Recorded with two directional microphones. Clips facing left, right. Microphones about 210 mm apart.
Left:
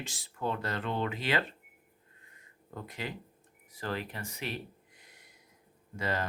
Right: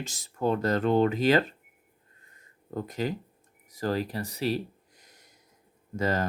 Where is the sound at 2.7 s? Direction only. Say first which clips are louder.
Right 9 dB; 40° right (ahead or behind).